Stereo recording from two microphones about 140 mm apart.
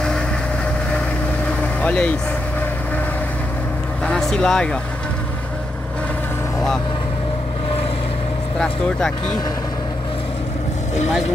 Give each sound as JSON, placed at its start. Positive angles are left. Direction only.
{"t": 1.8, "sound": "speech", "side_deg": 10}
{"t": 4.0, "sound": "vehicle", "side_deg": 5}